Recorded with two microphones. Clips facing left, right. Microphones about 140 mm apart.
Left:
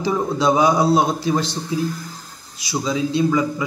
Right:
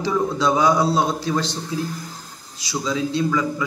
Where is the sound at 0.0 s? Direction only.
15° left (ahead or behind).